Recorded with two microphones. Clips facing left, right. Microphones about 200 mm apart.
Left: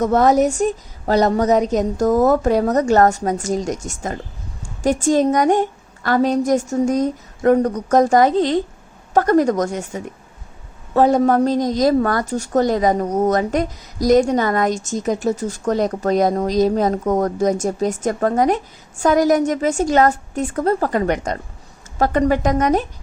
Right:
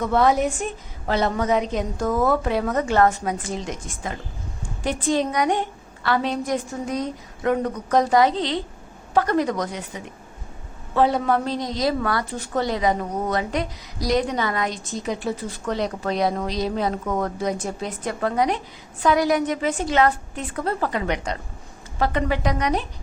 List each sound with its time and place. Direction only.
0.0 s a woman's voice: 40° left (ahead or behind)